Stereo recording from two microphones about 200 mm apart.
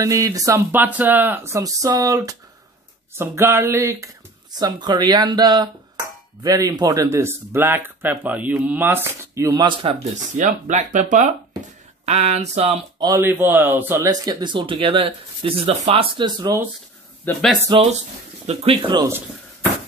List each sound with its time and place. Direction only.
0.0 s a man's voice: 15° right (ahead or behind)
10.3 s speech: 35° right (ahead or behind)
13.0 s a man's voice: 15° right (ahead or behind)
17.2 s speech: 10° left (ahead or behind)
17.6 s a man's voice: 25° right (ahead or behind)